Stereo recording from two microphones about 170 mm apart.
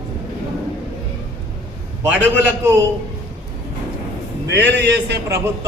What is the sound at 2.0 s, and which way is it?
Speech, 10° right (ahead or behind).